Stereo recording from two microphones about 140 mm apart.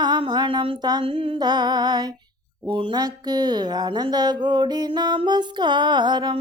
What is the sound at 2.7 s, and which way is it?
Speech, 35° right (ahead or behind).